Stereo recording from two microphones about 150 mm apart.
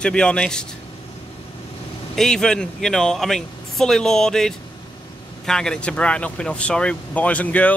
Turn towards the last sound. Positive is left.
turn(degrees=10)  # may be behind; listen again after turning